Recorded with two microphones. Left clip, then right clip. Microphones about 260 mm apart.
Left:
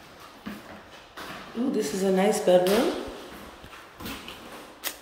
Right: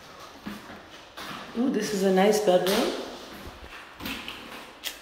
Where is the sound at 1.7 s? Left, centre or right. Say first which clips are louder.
Even; centre.